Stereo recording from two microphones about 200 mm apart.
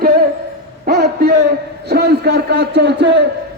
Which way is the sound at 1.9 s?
55° right (ahead or behind).